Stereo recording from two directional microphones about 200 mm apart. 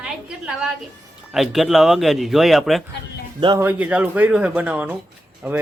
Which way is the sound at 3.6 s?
5° right (ahead or behind).